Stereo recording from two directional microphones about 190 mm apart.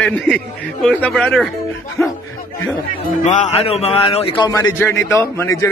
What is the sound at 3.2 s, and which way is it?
A man's voice, 40° left (ahead or behind).